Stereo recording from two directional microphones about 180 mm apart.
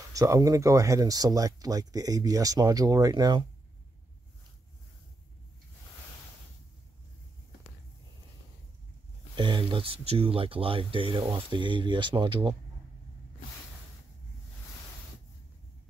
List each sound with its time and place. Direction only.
0.1 s speech: 20° right (ahead or behind)
9.3 s speech: 25° right (ahead or behind)